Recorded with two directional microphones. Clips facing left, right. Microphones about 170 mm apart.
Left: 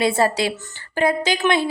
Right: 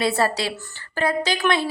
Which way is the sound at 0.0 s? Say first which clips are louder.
Left 3 dB; 25° left (ahead or behind).